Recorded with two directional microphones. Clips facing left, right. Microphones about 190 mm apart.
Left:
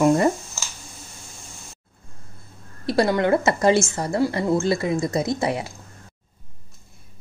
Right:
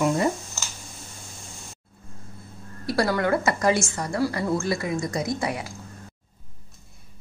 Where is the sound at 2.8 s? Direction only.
20° left (ahead or behind).